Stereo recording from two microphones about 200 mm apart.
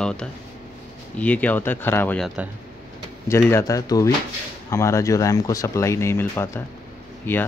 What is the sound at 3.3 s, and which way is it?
Speech, 15° left (ahead or behind).